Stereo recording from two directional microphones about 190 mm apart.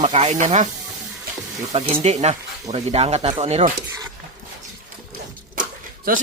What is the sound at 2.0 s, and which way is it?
Speech, 35° right (ahead or behind).